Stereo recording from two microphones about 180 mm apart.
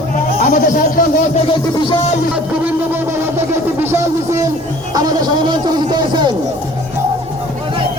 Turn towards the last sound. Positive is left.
turn(degrees=-25)  # may be behind; listen again after turning